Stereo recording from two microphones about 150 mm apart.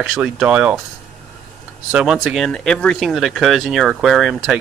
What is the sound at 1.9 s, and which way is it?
Speech, 5° right (ahead or behind).